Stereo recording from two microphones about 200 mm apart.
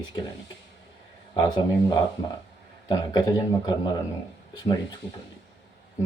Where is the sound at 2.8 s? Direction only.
20° left (ahead or behind).